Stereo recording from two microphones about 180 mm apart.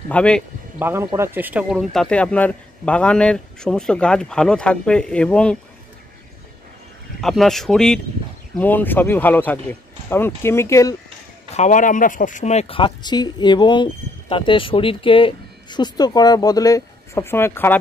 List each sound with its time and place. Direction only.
0.1 s speech: 5° left (ahead or behind)
0.7 s speech: 10° right (ahead or behind); by 5.6 s 5° left (ahead or behind)
7.2 s speech: centre (ahead or behind); by 11.0 s 15° left (ahead or behind)
11.5 s speech: 45° left (ahead or behind); by 17.7 s 10° left (ahead or behind)